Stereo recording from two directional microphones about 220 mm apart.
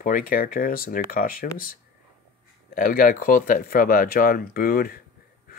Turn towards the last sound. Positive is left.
turn(degrees=40)  # may be behind; listen again after turning